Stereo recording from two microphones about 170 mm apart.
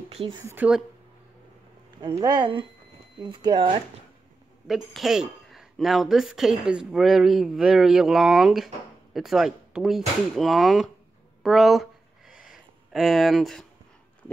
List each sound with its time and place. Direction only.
0.1 s a woman's voice: 35° right (ahead or behind)
0.4 s a woman's voice: 15° right (ahead or behind)
2.0 s speech: 25° right (ahead or behind)
4.6 s speech: centre (ahead or behind)
11.4 s a sound: centre (ahead or behind)